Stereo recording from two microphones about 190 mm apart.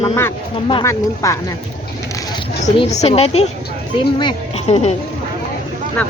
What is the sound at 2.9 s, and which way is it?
A woman's voice, 35° left (ahead or behind).